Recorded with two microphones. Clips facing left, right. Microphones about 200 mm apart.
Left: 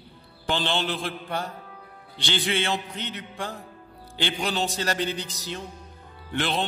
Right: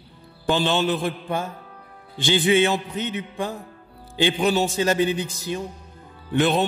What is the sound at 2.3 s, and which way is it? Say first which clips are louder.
Music: right 8 dB; 15° right (ahead or behind).